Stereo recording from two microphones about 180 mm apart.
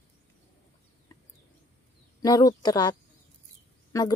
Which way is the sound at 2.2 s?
20° left (ahead or behind).